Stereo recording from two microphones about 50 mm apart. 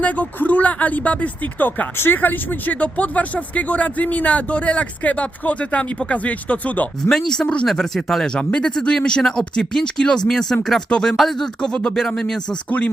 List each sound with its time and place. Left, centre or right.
0.0 s speech: left
2.7 s speech: left
7.1 s speech: centre
7.4 s speech: left
7.7 s speech: centre
11.6 s speech: centre